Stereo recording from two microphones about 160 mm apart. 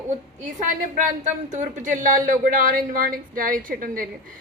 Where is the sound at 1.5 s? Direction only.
50° right (ahead or behind).